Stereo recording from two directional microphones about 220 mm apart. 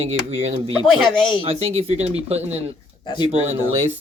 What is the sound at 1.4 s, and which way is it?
Speech, 25° right (ahead or behind).